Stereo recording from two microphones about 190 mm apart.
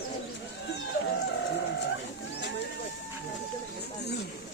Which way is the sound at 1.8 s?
65° left (ahead or behind).